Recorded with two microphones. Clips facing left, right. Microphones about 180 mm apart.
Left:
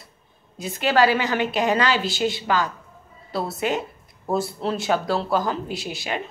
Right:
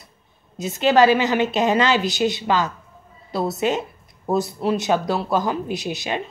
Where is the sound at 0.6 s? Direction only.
20° right (ahead or behind).